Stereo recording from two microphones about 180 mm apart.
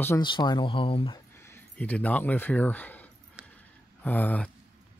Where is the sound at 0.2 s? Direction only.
25° left (ahead or behind).